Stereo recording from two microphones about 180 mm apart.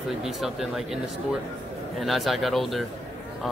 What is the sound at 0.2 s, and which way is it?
Speech, centre (ahead or behind).